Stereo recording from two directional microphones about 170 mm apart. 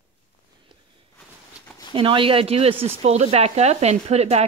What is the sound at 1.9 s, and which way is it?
Speech, 30° right (ahead or behind).